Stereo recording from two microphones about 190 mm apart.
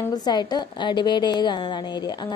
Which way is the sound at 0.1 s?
20° left (ahead or behind).